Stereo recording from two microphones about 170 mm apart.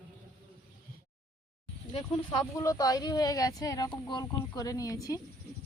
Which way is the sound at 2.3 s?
20° left (ahead or behind).